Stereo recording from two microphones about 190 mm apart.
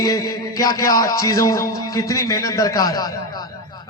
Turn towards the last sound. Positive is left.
turn(degrees=20)  # may be behind; listen again after turning